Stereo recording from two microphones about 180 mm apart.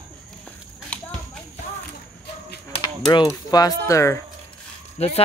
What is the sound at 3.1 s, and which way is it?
Speech, 20° left (ahead or behind).